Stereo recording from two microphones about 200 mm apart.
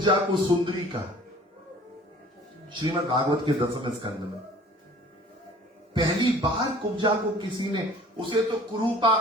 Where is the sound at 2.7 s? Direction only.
25° right (ahead or behind).